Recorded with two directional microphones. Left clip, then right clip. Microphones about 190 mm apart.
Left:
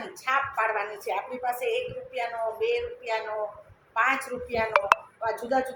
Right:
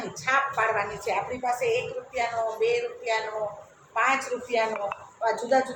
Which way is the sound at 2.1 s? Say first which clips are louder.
Right 3 dB; 25° left (ahead or behind).